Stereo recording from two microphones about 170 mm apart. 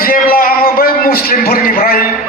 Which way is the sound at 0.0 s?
60° left (ahead or behind).